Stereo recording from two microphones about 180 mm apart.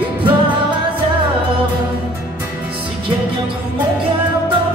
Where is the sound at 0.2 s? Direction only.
25° right (ahead or behind).